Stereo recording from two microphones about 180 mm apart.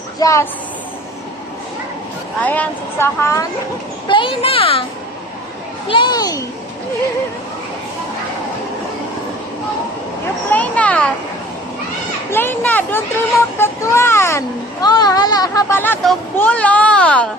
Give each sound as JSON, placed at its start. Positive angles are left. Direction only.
{"t": 0.2, "sound": "a child's voice", "side_deg": 15}
{"t": 2.4, "sound": "a child's voice", "side_deg": 10}
{"t": 4.1, "sound": "a child's voice", "side_deg": 30}
{"t": 5.9, "sound": "a child's voice", "side_deg": 25}
{"t": 10.5, "sound": "a child's voice", "side_deg": 10}
{"t": 12.3, "sound": "a child's voice", "side_deg": 10}